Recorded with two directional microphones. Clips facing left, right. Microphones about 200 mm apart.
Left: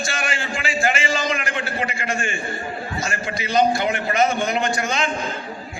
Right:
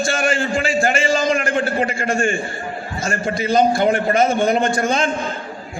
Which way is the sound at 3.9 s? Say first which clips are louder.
Right 6 dB; 35° right (ahead or behind).